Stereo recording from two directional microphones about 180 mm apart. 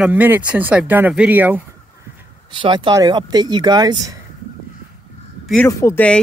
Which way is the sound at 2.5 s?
25° right (ahead or behind).